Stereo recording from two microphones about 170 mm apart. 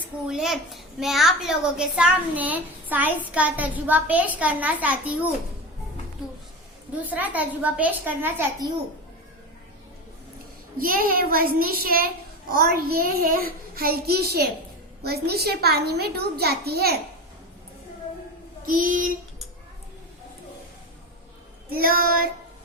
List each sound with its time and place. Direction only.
0.3 s a child's voice: centre (ahead or behind)
7.0 s a child's voice: 10° right (ahead or behind)
10.8 s child singing: 55° right (ahead or behind)
15.0 s a child's voice: 70° right (ahead or behind)
18.6 s child singing: 55° right (ahead or behind)
21.7 s child singing: 60° right (ahead or behind)